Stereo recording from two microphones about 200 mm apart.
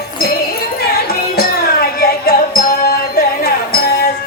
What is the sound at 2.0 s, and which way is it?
Music, 45° left (ahead or behind).